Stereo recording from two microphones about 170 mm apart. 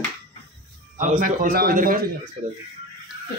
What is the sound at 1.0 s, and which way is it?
A man's voice, 50° right (ahead or behind).